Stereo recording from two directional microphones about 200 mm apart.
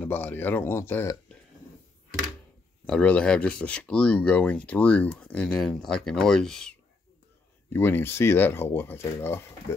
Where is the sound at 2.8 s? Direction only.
5° left (ahead or behind).